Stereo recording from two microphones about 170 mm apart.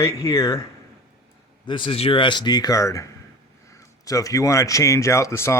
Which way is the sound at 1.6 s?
30° left (ahead or behind).